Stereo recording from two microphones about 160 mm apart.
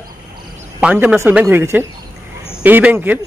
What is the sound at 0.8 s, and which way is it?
Speech, 5° right (ahead or behind).